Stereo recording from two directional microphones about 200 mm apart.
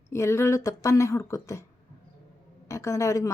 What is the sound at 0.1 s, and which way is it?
A woman's voice, 15° left (ahead or behind).